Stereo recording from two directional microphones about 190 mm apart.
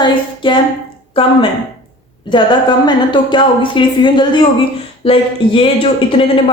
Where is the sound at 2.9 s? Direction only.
25° left (ahead or behind).